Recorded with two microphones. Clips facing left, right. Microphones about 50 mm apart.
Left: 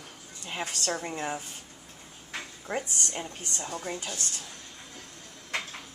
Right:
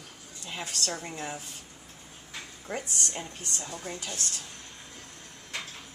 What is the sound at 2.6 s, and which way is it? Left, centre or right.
Speech, centre.